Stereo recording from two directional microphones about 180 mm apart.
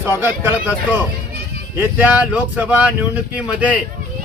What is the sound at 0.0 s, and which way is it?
A man's voice, 15° right (ahead or behind).